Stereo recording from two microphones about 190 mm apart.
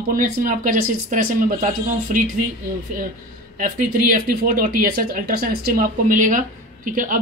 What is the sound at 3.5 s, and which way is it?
A woman's voice, 45° right (ahead or behind).